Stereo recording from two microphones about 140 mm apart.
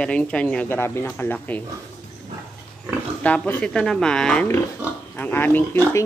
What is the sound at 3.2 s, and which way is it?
Speech, 10° left (ahead or behind).